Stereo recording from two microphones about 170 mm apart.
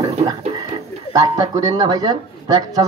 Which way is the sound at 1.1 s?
20° right (ahead or behind).